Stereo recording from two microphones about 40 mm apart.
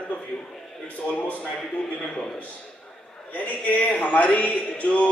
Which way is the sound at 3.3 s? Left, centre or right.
Left.